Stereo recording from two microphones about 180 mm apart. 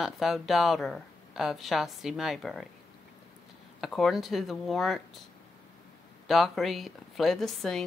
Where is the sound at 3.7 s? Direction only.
Centre (ahead or behind).